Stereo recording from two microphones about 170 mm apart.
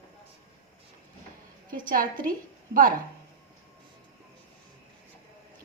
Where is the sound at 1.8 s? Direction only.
55° right (ahead or behind).